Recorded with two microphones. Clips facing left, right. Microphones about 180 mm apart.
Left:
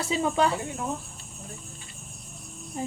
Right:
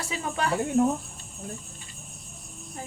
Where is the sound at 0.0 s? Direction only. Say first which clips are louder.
Left 5 dB; 30° left (ahead or behind).